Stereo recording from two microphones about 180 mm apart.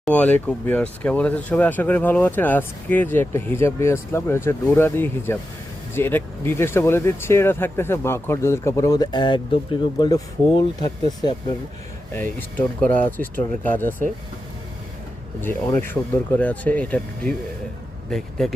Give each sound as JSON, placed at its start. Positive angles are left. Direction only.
{"t": 0.0, "sound": "speech", "side_deg": 5}
{"t": 12.4, "sound": "speech", "side_deg": 10}
{"t": 15.4, "sound": "speech", "side_deg": 10}